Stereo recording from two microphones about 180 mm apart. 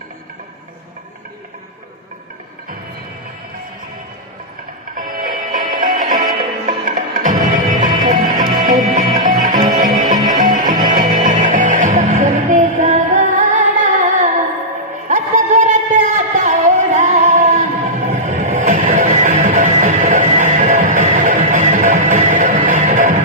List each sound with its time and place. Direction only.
4.9 s music: 50° right (ahead or behind)
15.1 s a sound: 40° right (ahead or behind)
18.1 s music: 40° right (ahead or behind)